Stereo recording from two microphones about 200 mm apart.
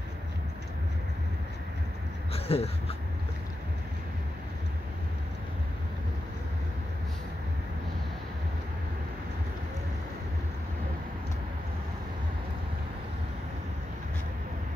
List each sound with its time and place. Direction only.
2.3 s speech: 30° left (ahead or behind)